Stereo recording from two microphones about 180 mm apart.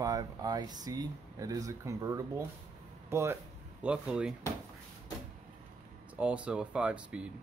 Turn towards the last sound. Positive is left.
turn(degrees=-5)  # may be behind; listen again after turning